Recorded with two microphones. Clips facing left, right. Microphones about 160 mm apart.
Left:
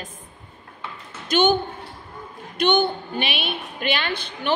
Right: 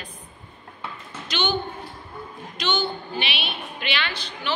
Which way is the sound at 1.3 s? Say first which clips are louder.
Left 8 dB; 50° left (ahead or behind).